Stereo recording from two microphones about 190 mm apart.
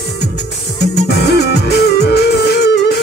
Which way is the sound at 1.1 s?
60° left (ahead or behind).